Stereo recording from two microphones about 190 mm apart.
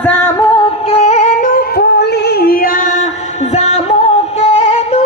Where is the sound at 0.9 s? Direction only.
35° left (ahead or behind).